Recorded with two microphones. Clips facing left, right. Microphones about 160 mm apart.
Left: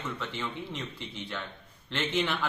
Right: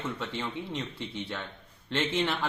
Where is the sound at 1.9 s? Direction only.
30° right (ahead or behind).